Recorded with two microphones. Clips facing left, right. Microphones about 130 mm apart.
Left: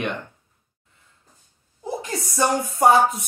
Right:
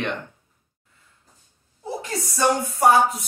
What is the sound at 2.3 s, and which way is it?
Speech, 25° left (ahead or behind).